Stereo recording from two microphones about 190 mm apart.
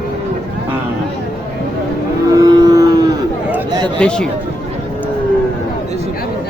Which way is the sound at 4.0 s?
5° left (ahead or behind).